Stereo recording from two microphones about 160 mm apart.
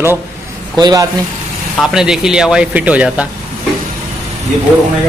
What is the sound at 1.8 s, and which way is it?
Speech, 5° right (ahead or behind).